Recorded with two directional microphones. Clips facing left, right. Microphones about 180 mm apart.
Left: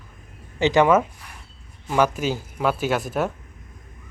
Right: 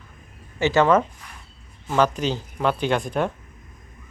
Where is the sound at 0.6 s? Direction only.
15° left (ahead or behind).